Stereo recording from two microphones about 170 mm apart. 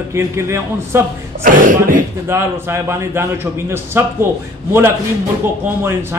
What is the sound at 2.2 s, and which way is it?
A man's voice, 15° right (ahead or behind).